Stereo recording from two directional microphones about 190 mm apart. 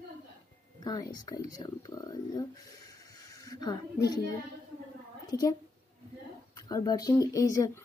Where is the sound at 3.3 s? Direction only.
20° left (ahead or behind).